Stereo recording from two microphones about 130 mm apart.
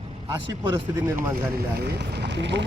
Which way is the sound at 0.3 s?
30° right (ahead or behind).